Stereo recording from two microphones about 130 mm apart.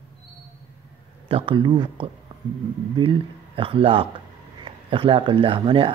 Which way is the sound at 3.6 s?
45° right (ahead or behind).